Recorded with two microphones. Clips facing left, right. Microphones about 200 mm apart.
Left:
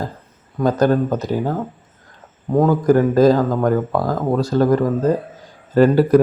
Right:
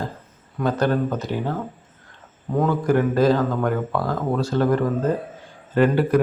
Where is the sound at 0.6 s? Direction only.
40° left (ahead or behind).